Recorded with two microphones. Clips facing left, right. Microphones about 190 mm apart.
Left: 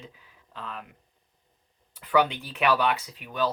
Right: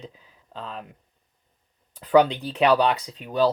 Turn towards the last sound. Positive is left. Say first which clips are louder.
# right 7 dB
turn(degrees=-35)  # may be behind; listen again after turning